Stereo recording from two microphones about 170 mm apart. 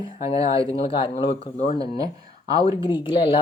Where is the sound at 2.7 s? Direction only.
30° left (ahead or behind).